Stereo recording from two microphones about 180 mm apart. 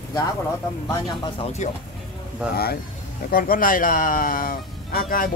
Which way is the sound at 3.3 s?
50° left (ahead or behind).